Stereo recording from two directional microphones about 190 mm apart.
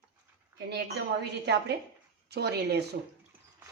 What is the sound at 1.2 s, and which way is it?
Speech, 60° right (ahead or behind).